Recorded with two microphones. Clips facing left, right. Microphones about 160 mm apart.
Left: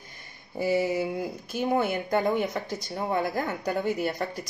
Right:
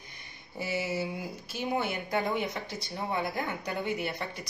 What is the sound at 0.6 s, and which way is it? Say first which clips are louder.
Speech: left 7 dB; 45° left (ahead or behind).